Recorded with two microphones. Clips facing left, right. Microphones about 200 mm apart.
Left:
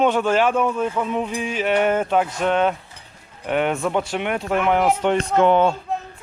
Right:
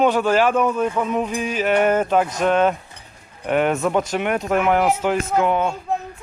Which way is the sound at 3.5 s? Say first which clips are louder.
Right 2 dB; 45° right (ahead or behind).